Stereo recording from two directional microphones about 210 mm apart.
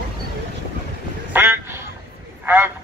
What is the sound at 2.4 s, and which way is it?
Speech, 10° right (ahead or behind).